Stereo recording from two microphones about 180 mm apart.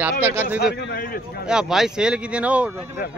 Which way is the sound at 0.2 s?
10° right (ahead or behind).